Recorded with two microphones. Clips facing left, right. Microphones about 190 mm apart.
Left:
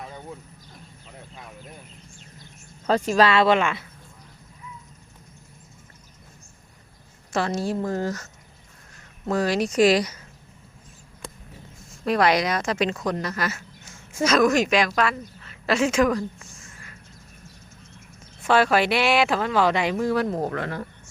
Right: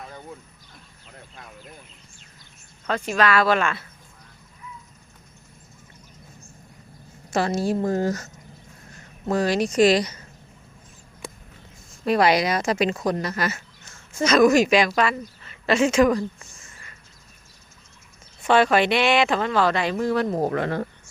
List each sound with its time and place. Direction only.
2.8 s speech: 35° left (ahead or behind); by 3.8 s 15° left (ahead or behind)
7.5 s speech: 10° right (ahead or behind)
9.2 s speech: centre (ahead or behind)
12.0 s a woman's voice: 5° right (ahead or behind)
18.4 s speech: 5° left (ahead or behind)
20.5 s speech: 20° right (ahead or behind)